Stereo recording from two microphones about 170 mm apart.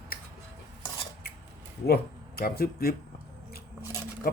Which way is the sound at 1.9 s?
65° left (ahead or behind).